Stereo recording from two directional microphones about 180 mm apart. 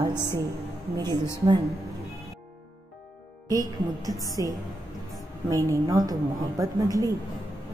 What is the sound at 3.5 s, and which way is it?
A woman's voice, 20° right (ahead or behind).